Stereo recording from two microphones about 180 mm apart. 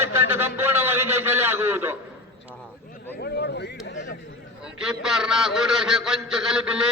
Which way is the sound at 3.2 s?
65° left (ahead or behind).